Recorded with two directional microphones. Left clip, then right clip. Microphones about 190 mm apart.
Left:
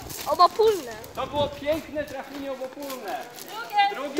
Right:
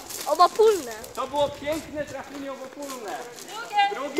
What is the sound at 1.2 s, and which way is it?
Speech, 35° left (ahead or behind).